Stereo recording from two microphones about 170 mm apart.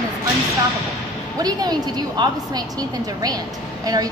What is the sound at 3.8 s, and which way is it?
Speech, 20° right (ahead or behind).